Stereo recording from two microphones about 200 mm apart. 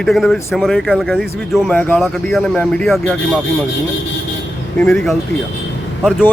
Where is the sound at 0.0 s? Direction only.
Centre (ahead or behind).